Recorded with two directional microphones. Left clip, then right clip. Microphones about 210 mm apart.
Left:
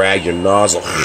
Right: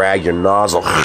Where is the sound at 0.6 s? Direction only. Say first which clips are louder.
Right 1 dB; centre (ahead or behind).